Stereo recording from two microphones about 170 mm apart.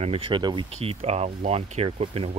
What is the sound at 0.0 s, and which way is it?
Speech, 35° right (ahead or behind).